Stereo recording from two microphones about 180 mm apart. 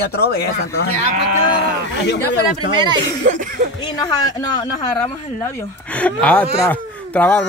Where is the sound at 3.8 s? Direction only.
25° left (ahead or behind).